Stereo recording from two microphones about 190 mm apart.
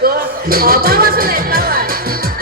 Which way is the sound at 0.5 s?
50° right (ahead or behind).